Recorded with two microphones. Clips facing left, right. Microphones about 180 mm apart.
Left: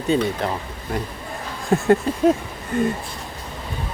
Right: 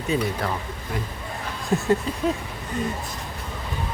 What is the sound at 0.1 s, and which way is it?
Speech, 30° left (ahead or behind).